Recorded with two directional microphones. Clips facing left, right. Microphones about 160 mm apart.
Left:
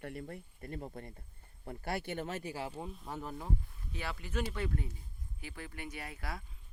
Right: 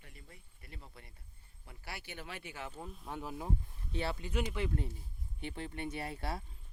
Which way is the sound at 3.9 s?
30° right (ahead or behind).